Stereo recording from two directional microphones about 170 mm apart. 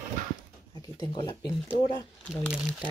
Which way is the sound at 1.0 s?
25° left (ahead or behind).